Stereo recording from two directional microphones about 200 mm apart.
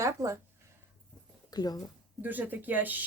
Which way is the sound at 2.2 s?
10° right (ahead or behind).